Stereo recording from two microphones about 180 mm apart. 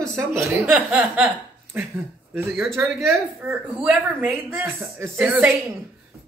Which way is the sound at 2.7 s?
15° right (ahead or behind).